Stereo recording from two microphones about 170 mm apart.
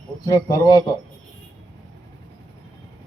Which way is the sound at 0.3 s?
20° left (ahead or behind).